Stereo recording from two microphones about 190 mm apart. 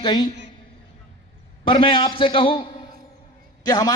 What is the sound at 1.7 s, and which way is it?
Speech, 30° left (ahead or behind).